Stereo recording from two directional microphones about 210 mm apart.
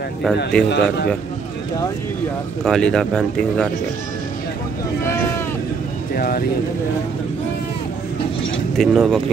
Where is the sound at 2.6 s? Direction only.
5° left (ahead or behind).